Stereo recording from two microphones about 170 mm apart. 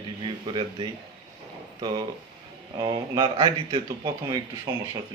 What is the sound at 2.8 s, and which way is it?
Speech, 25° right (ahead or behind).